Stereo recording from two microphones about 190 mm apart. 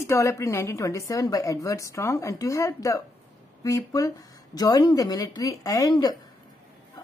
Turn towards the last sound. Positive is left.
turn(degrees=20)  # may be behind; listen again after turning